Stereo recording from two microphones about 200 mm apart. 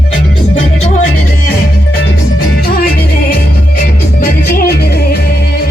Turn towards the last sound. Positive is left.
turn(degrees=45)  # may be behind; listen again after turning